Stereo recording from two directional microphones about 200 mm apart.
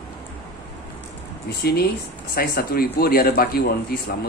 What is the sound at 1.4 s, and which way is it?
Speech, 50° left (ahead or behind).